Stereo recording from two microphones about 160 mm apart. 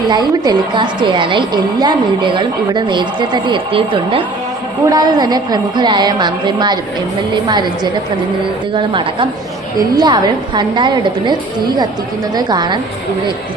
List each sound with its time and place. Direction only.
0.1 s a woman's voice: 25° right (ahead or behind)
8.7 s a woman's voice: 30° right (ahead or behind)